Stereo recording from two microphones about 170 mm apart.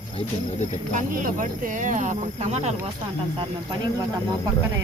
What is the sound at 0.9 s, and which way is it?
Speech, 50° right (ahead or behind).